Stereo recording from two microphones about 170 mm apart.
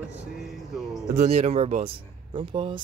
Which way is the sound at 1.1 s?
40° right (ahead or behind).